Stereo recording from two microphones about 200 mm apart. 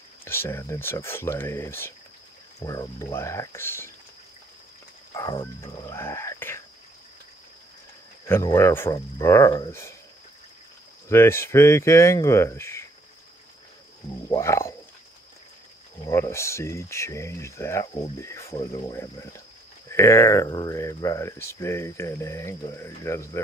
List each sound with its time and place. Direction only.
0.2 s speech: 10° left (ahead or behind)
5.1 s speech: 20° left (ahead or behind)
8.3 s speech: 15° left (ahead or behind)
11.1 s speech: 10° left (ahead or behind)
14.3 s speech: 15° left (ahead or behind)
16.1 s speech: 15° left (ahead or behind)